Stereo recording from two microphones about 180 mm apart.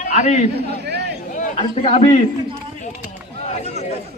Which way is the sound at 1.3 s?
40° left (ahead or behind).